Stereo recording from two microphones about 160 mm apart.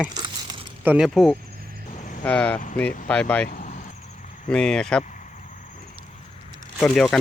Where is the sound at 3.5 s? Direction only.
55° left (ahead or behind).